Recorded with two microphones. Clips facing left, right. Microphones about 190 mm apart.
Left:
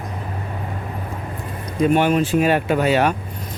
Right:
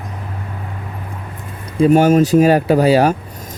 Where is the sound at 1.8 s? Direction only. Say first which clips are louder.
Right 6 dB; 40° right (ahead or behind).